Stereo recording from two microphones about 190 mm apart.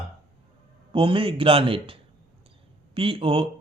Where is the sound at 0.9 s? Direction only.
30° right (ahead or behind).